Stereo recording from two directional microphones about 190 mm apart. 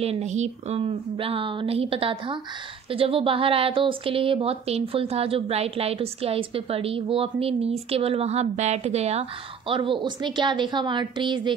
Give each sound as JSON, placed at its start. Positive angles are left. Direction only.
{"t": 0.0, "sound": "speech", "side_deg": -35}